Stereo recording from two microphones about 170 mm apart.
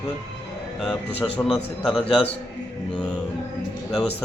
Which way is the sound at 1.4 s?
5° left (ahead or behind).